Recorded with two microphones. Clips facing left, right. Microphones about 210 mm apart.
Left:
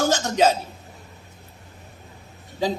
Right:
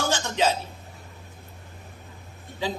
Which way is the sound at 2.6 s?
40° left (ahead or behind).